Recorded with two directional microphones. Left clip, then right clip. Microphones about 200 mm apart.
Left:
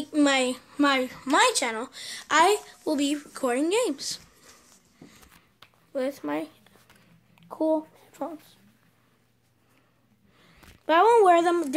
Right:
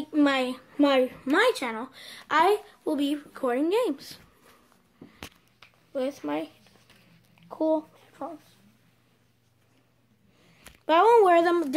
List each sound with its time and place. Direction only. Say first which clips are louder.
0.1 s speech: left 1 dB; 5° right (ahead or behind)
5.9 s speech: left 1 dB; 5° left (ahead or behind)
7.3 s a sound: even; 20° left (ahead or behind)
8.2 s speech: left 3 dB; 40° left (ahead or behind)
10.9 s speech: even; centre (ahead or behind)